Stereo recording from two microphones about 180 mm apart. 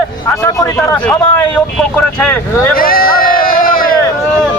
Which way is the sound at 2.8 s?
55° left (ahead or behind).